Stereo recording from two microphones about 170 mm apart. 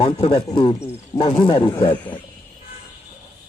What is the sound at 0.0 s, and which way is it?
Speech, 30° left (ahead or behind).